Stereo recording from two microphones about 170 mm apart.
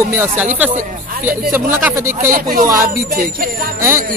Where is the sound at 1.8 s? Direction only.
10° right (ahead or behind).